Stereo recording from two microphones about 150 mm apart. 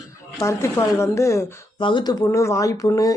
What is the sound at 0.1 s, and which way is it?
Speech, 20° left (ahead or behind).